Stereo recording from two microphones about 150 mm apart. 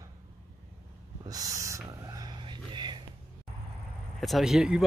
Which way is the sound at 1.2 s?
25° right (ahead or behind).